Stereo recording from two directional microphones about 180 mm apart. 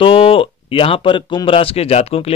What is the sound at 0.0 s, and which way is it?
Speech, 30° left (ahead or behind).